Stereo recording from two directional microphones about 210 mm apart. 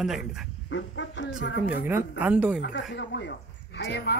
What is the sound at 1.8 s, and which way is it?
Speech, 10° right (ahead or behind).